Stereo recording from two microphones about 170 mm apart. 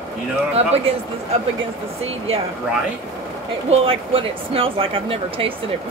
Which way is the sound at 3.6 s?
35° right (ahead or behind).